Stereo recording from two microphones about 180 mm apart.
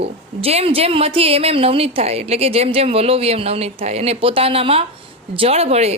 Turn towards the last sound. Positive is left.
turn(degrees=-35)  # may be behind; listen again after turning